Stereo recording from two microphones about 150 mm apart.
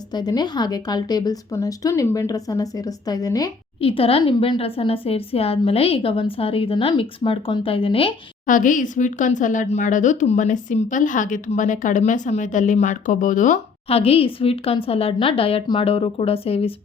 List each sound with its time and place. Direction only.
0.1 s a woman's voice: 25° left (ahead or behind)
3.8 s a woman's voice: 40° left (ahead or behind)
8.4 s speech: 60° left (ahead or behind)
13.8 s a woman's voice: 40° left (ahead or behind)